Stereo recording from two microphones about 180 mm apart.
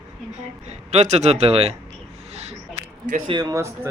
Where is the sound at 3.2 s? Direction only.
25° right (ahead or behind).